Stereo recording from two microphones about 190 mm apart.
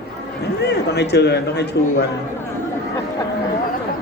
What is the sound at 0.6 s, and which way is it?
A man's voice, 60° left (ahead or behind).